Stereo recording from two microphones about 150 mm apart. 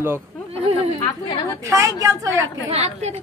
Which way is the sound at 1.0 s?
20° left (ahead or behind).